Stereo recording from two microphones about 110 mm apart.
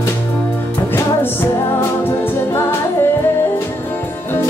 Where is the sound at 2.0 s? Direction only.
20° left (ahead or behind).